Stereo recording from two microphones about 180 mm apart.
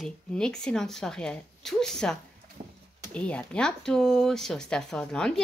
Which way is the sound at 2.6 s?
40° right (ahead or behind).